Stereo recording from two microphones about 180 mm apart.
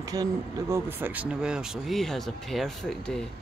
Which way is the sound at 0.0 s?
20° right (ahead or behind).